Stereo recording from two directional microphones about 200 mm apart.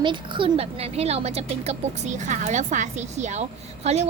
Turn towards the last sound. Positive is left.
turn(degrees=-35)  # may be behind; listen again after turning